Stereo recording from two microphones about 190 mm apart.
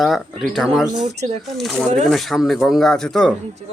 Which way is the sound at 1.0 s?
35° right (ahead or behind).